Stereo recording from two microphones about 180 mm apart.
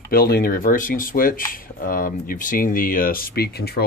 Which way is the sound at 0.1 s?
55° left (ahead or behind).